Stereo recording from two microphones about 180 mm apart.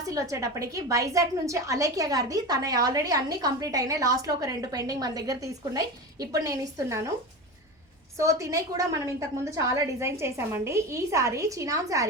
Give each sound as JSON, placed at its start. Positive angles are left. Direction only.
{"t": 0.1, "sound": "a woman's voice", "side_deg": -20}
{"t": 8.2, "sound": "a woman's voice", "side_deg": -15}